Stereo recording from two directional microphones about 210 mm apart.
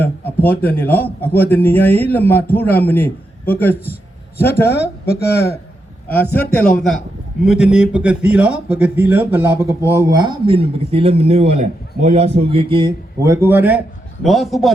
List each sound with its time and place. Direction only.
0.0 s a man's voice: 10° left (ahead or behind)
4.7 s speech: 50° left (ahead or behind)
6.3 s a man's voice: 5° left (ahead or behind)